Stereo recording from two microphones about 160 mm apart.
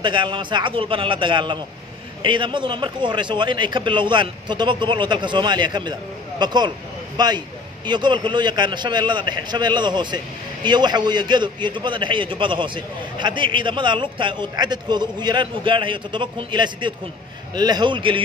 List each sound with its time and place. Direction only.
0.0 s a man's voice: 30° right (ahead or behind)